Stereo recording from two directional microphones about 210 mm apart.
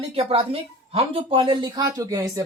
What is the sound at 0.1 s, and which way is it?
Speech, 30° right (ahead or behind).